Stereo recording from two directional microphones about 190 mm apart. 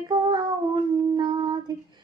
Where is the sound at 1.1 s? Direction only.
25° right (ahead or behind).